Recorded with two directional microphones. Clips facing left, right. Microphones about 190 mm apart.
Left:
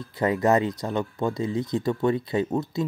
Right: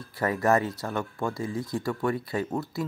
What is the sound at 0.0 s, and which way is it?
Speech, 20° left (ahead or behind).